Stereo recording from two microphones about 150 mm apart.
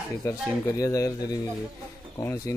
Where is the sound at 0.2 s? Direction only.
20° left (ahead or behind).